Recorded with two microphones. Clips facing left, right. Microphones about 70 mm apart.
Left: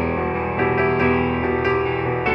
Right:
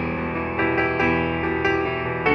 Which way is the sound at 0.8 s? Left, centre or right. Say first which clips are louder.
Left 3 dB; left.